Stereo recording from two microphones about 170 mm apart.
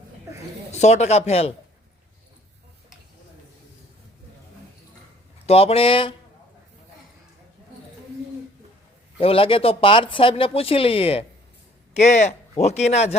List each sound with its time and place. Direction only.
0.7 s speech: 40° left (ahead or behind)
5.5 s speech: 35° left (ahead or behind)
9.1 s speech: 30° left (ahead or behind)